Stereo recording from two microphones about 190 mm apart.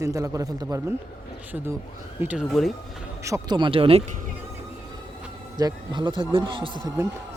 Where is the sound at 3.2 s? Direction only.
20° right (ahead or behind).